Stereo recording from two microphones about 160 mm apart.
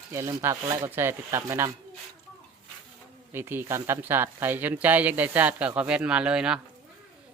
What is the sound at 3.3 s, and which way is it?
Speech, 15° right (ahead or behind).